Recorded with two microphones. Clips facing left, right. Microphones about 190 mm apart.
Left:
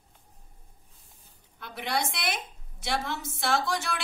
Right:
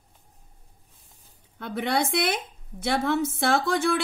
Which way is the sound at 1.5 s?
60° right (ahead or behind).